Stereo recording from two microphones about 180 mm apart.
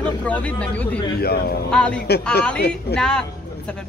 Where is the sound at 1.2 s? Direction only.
60° left (ahead or behind).